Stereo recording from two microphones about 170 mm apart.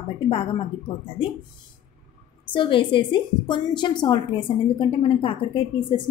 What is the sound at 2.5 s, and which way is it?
A woman's voice, 30° left (ahead or behind).